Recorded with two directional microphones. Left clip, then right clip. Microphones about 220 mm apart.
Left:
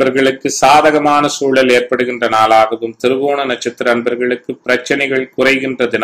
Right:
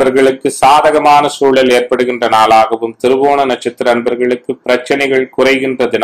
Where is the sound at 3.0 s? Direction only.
25° left (ahead or behind).